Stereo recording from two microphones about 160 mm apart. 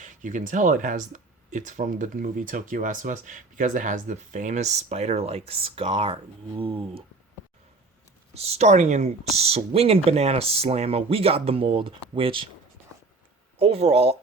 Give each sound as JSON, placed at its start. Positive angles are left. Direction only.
{"t": 0.0, "sound": "speech", "side_deg": -50}
{"t": 8.4, "sound": "speech", "side_deg": -40}
{"t": 13.6, "sound": "speech", "side_deg": -40}